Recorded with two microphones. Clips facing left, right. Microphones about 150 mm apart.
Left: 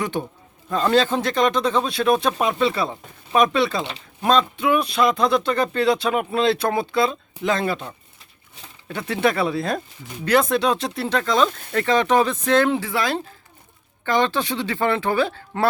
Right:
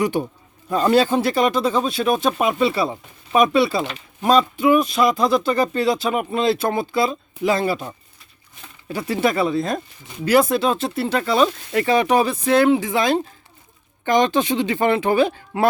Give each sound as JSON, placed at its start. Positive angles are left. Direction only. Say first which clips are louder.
{"t": 0.0, "sound": "speech", "louder": "right 5 dB", "side_deg": -10}
{"t": 12.8, "sound": "speech", "louder": "right 4 dB", "side_deg": -20}